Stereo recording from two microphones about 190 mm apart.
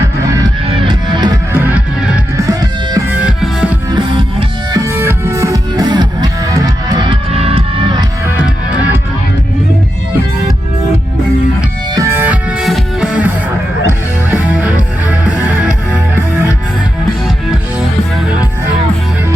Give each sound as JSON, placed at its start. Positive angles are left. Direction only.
{"t": 0.8, "sound": "music", "side_deg": -25}
{"t": 1.5, "sound": "music", "side_deg": -10}
{"t": 2.5, "sound": "music", "side_deg": -20}
{"t": 3.1, "sound": "music", "side_deg": -5}
{"t": 3.9, "sound": "music", "side_deg": -25}
{"t": 4.9, "sound": "music", "side_deg": -10}
{"t": 11.9, "sound": "music", "side_deg": -15}
{"t": 17.2, "sound": "music", "side_deg": 0}